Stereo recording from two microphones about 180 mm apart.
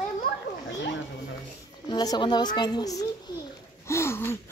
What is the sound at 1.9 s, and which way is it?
A woman's voice, 25° left (ahead or behind).